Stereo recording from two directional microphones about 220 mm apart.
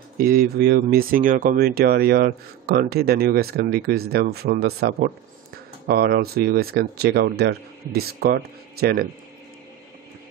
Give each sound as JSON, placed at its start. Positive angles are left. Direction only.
{"t": 0.2, "sound": "speech", "side_deg": -40}